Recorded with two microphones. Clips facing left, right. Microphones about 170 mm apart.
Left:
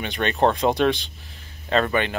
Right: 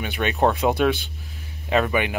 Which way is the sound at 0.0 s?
10° right (ahead or behind).